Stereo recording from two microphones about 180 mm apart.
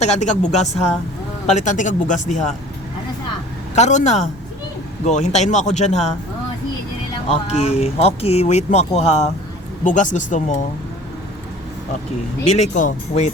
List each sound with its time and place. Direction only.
0.0 s speech: 40° left (ahead or behind)
3.8 s speech: 40° left (ahead or behind)
7.4 s speech: 35° left (ahead or behind)
12.5 s speech: 40° left (ahead or behind)